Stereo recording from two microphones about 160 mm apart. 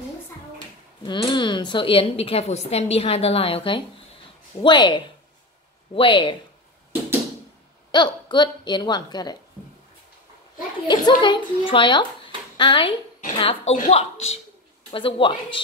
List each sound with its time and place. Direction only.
1.0 s a woman's voice: 30° left (ahead or behind)
7.9 s a woman's voice: 30° left (ahead or behind)
10.9 s a woman's voice: 30° left (ahead or behind)